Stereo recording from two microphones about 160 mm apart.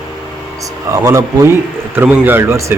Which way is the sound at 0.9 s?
20° right (ahead or behind).